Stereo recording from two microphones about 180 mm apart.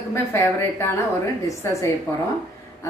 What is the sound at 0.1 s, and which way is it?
A woman's voice, 15° left (ahead or behind).